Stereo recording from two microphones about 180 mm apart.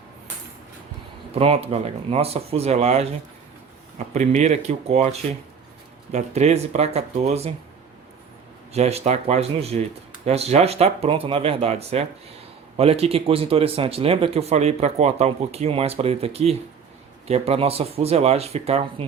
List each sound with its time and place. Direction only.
1.4 s speech: 35° right (ahead or behind)
6.1 s speech: 40° right (ahead or behind)
8.7 s speech: 35° right (ahead or behind)